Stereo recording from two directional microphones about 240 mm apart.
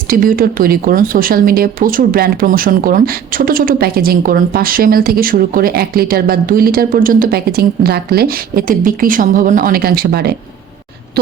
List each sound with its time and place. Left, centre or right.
0.1 s speech: right